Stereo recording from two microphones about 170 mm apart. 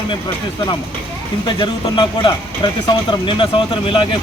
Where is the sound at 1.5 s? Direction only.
30° left (ahead or behind).